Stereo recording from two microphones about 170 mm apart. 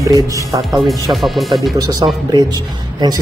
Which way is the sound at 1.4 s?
25° right (ahead or behind).